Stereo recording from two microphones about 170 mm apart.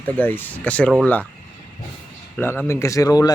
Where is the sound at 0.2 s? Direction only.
10° left (ahead or behind).